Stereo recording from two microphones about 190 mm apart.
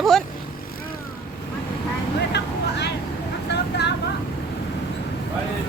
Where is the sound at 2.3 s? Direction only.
65° left (ahead or behind).